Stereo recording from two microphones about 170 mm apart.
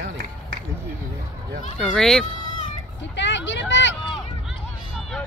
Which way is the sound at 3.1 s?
90° left.